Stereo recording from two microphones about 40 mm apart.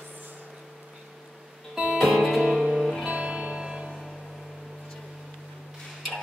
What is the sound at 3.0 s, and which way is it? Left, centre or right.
Music, right.